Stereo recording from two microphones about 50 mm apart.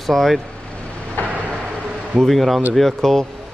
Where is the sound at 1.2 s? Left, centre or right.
Left.